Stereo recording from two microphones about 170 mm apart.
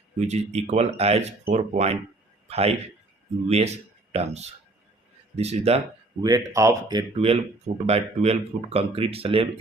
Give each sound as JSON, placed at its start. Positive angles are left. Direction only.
{"t": 0.3, "sound": "speech", "side_deg": -40}
{"t": 6.2, "sound": "speech", "side_deg": -20}
{"t": 7.2, "sound": "speech", "side_deg": -35}